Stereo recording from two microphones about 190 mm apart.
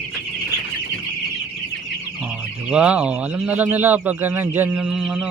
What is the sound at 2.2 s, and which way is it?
Speech, 5° right (ahead or behind).